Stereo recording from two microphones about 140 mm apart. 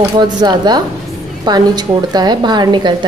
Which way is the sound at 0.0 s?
30° right (ahead or behind).